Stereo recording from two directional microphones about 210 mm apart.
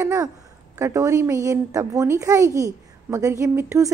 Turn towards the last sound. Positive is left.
turn(degrees=-15)  # may be behind; listen again after turning